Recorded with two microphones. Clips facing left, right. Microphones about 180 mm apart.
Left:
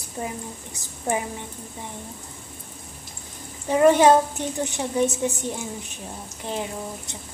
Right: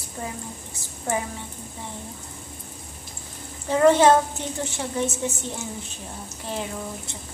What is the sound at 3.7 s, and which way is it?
A woman's voice, 15° left (ahead or behind).